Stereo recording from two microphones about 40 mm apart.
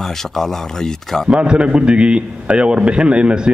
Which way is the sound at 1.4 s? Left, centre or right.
Right.